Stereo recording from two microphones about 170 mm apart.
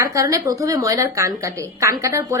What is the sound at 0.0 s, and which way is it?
A woman's voice, 20° right (ahead or behind).